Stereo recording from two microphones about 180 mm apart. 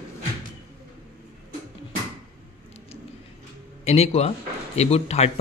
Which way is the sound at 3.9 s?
35° left (ahead or behind).